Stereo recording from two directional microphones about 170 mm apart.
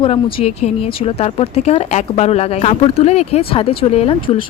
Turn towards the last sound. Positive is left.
turn(degrees=35)  # may be behind; listen again after turning